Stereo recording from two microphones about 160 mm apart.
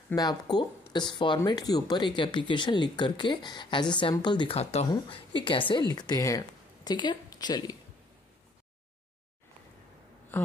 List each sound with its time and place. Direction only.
0.1 s speech: 25° left (ahead or behind)